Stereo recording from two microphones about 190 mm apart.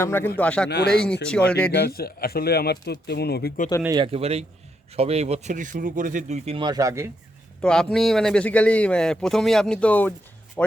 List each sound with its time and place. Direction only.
0.0 s a man's voice: 10° left (ahead or behind)
1.7 s speech: 55° left (ahead or behind)
3.8 s speech: 25° right (ahead or behind)
7.6 s a man's voice: 5° left (ahead or behind)